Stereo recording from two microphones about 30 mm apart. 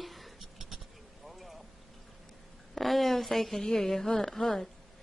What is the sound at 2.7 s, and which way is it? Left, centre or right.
A woman's voice, centre.